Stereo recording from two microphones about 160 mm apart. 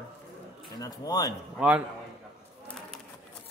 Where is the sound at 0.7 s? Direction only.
25° left (ahead or behind).